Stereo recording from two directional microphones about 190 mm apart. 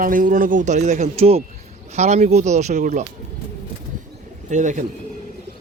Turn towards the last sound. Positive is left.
turn(degrees=-40)  # may be behind; listen again after turning